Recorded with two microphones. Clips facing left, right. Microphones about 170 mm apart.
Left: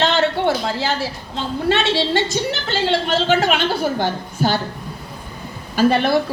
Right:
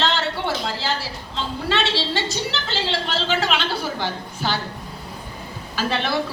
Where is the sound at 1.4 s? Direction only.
50° left (ahead or behind).